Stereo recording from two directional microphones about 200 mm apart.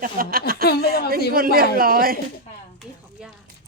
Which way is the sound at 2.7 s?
Centre (ahead or behind).